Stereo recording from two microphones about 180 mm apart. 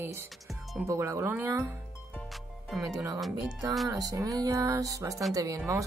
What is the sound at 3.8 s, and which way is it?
Music, 20° right (ahead or behind).